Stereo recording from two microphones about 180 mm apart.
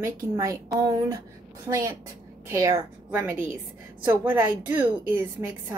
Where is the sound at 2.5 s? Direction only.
20° right (ahead or behind).